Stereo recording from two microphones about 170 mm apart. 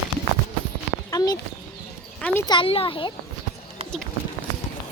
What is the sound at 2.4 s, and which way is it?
Speech, 30° left (ahead or behind).